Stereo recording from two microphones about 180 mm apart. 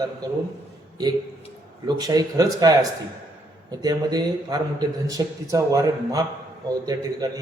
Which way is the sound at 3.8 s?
20° right (ahead or behind).